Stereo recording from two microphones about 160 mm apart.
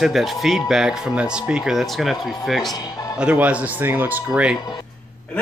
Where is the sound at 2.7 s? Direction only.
25° left (ahead or behind).